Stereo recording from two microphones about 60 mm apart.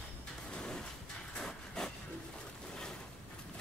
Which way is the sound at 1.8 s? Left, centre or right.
Centre.